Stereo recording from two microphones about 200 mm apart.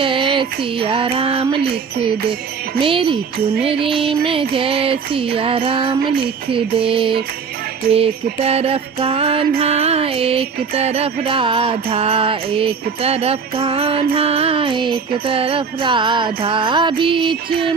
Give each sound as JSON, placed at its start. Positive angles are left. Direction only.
{"t": 0.0, "sound": "music", "side_deg": -25}
{"t": 2.8, "sound": "music", "side_deg": -25}